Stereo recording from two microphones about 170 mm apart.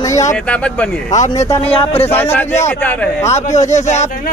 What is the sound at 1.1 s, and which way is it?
Speech, 45° left (ahead or behind).